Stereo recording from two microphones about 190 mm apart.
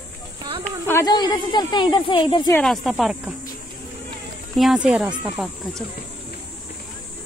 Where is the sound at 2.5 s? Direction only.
5° left (ahead or behind).